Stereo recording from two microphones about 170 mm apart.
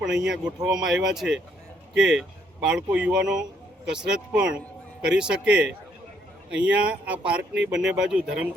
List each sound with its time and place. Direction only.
0.0 s a man's voice: 5° right (ahead or behind)